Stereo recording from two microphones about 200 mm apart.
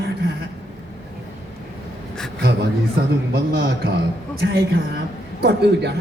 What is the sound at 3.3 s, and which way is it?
A woman's voice, 50° right (ahead or behind).